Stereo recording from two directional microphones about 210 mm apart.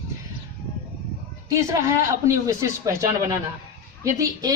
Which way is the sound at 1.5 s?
15° right (ahead or behind).